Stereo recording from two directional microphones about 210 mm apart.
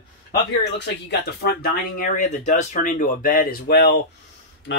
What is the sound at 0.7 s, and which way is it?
Speech, 55° left (ahead or behind).